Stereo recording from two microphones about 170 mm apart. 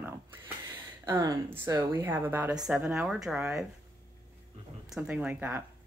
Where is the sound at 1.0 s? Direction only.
20° right (ahead or behind); by 3.6 s 5° right (ahead or behind).